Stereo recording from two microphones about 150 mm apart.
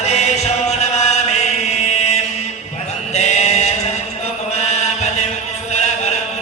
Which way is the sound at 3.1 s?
50° left (ahead or behind).